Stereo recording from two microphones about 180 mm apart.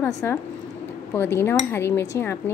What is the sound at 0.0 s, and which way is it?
A woman's voice, 10° left (ahead or behind).